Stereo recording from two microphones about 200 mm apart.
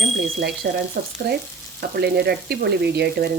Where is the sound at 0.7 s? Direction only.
50° right (ahead or behind).